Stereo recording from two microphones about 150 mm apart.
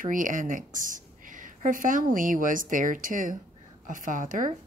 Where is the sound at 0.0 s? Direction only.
60° right (ahead or behind).